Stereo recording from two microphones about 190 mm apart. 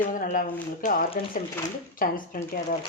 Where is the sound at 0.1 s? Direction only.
45° left (ahead or behind).